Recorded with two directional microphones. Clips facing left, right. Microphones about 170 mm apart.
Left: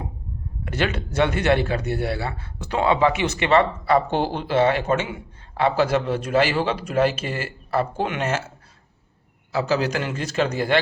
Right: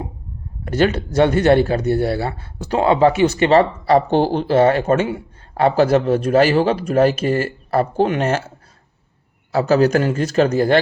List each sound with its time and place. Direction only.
0.6 s speech: 40° right (ahead or behind)
4.1 s a man's voice: 50° right (ahead or behind)